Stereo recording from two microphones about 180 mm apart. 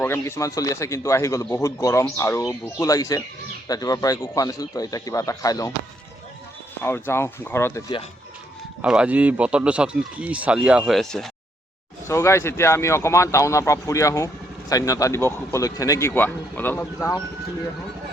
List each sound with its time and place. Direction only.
0.0 s a man's voice: 15° left (ahead or behind)
6.8 s a man's voice: 15° left (ahead or behind)
8.8 s speech: 5° right (ahead or behind)
12.0 s a man's voice: 15° left (ahead or behind)